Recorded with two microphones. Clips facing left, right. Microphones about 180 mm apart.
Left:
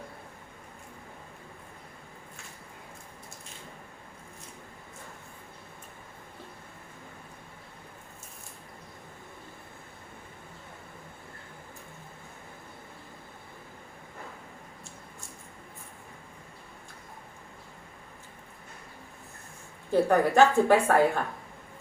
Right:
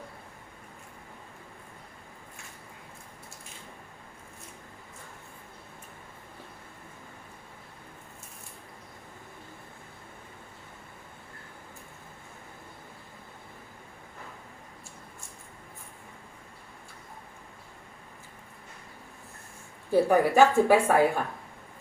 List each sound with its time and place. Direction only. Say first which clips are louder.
19.9 s a woman's voice: right 1 dB; 10° right (ahead or behind)